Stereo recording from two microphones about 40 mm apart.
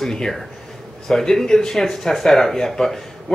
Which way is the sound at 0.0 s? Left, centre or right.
Centre.